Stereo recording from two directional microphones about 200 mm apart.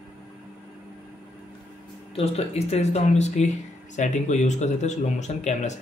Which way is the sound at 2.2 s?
30° left (ahead or behind).